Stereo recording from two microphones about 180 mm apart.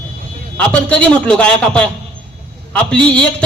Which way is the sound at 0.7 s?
5° left (ahead or behind).